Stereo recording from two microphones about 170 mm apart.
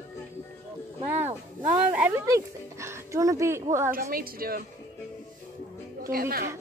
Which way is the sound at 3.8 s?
60° right (ahead or behind).